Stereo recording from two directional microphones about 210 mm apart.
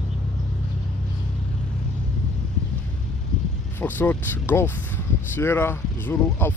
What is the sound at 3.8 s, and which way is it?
Speech, 10° left (ahead or behind).